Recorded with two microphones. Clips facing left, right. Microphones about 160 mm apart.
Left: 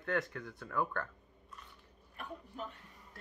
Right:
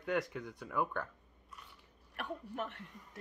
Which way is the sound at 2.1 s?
75° right (ahead or behind).